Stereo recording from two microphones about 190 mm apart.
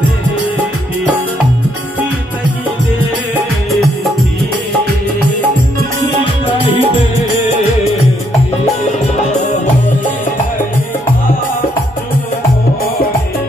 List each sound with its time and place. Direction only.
6.4 s music: 25° left (ahead or behind)